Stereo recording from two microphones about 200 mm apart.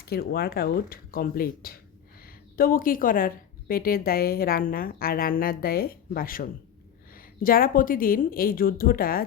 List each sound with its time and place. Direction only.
0.0 s a woman's voice: 50° left (ahead or behind)